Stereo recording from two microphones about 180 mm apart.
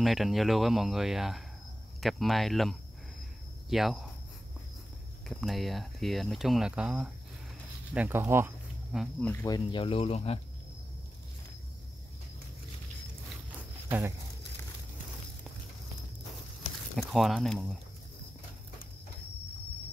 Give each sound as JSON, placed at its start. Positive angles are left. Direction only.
{"t": 0.0, "sound": "speech", "side_deg": 0}
{"t": 5.3, "sound": "speech", "side_deg": 0}
{"t": 9.2, "sound": "speech", "side_deg": 15}
{"t": 9.7, "sound": "speech", "side_deg": 30}
{"t": 13.5, "sound": "a sound", "side_deg": -10}
{"t": 16.9, "sound": "speech", "side_deg": 0}